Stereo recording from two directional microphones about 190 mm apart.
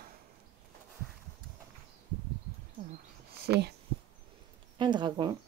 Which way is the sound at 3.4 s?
60° right (ahead or behind).